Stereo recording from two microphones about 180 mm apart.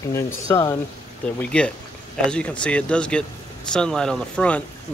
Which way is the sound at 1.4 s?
5° left (ahead or behind).